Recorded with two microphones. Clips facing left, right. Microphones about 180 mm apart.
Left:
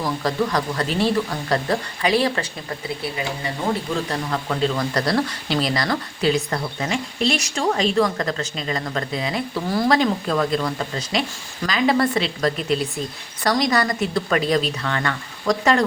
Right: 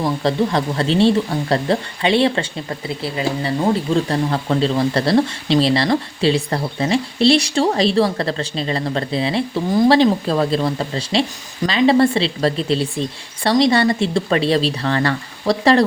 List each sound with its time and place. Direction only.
0.0 s speech: 25° right (ahead or behind)